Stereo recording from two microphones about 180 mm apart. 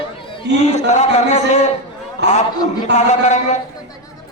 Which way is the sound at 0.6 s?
40° left (ahead or behind).